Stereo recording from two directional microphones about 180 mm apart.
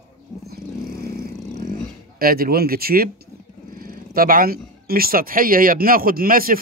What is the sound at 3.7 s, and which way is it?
Purr, 55° right (ahead or behind).